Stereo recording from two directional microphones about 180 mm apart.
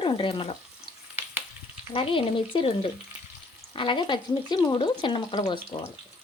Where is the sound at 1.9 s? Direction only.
30° left (ahead or behind).